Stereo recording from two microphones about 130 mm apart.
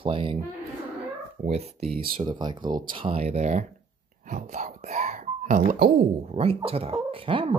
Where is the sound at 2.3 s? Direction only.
35° right (ahead or behind).